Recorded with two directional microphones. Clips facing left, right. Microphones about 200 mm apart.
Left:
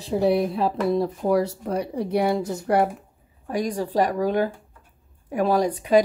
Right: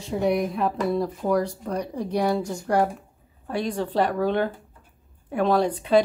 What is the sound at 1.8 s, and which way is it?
Speech, 5° left (ahead or behind).